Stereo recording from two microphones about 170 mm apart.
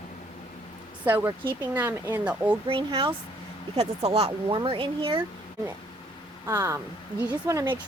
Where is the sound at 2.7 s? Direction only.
30° right (ahead or behind).